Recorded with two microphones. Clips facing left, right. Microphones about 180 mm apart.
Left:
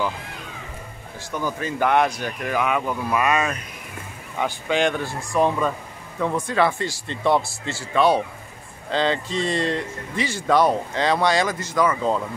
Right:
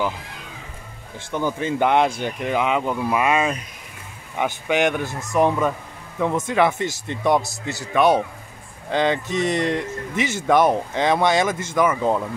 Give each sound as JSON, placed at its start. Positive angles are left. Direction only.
{"t": 1.3, "sound": "speech", "side_deg": -20}